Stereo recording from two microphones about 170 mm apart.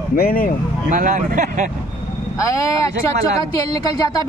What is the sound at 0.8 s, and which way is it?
Speech, 50° right (ahead or behind).